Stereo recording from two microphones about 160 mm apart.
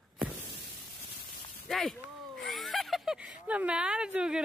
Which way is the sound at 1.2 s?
Centre (ahead or behind).